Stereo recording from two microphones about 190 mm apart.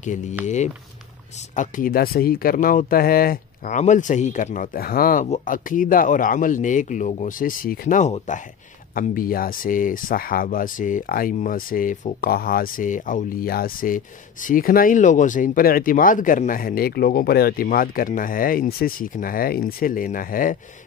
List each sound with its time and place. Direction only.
0.0 s speech: 40° left (ahead or behind)
1.5 s speech: 45° left (ahead or behind)